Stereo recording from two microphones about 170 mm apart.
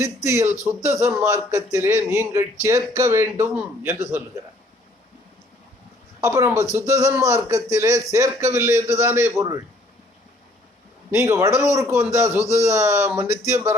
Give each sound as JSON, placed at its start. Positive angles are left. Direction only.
{"t": 0.0, "sound": "a man's voice", "side_deg": -15}
{"t": 6.1, "sound": "a man's voice", "side_deg": -15}
{"t": 11.1, "sound": "a man's voice", "side_deg": -15}